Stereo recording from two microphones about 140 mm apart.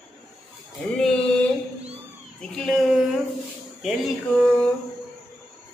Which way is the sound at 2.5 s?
Centre (ahead or behind).